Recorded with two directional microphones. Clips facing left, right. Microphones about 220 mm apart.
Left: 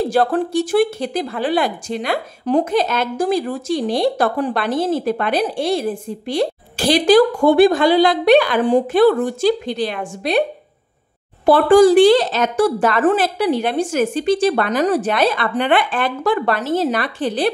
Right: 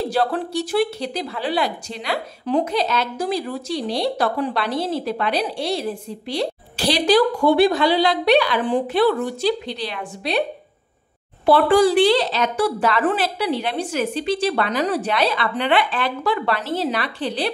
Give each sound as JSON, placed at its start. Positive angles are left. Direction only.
{"t": 0.0, "sound": "a woman's voice", "side_deg": 50}
{"t": 11.4, "sound": "a woman's voice", "side_deg": 45}